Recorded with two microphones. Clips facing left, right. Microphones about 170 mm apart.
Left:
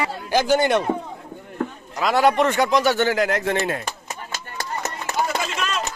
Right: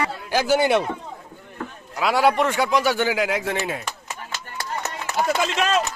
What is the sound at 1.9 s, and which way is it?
A man's voice, 10° right (ahead or behind).